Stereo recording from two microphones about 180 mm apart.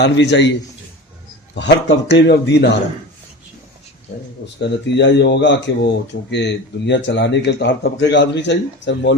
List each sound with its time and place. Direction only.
0.0 s a man's voice: 75° left (ahead or behind)
1.5 s a man's voice: 75° left (ahead or behind)
4.6 s a man's voice: 70° left (ahead or behind)